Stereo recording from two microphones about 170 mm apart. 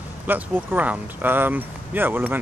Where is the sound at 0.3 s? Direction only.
10° right (ahead or behind).